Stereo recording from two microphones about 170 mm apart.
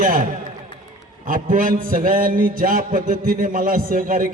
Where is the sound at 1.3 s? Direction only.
55° right (ahead or behind).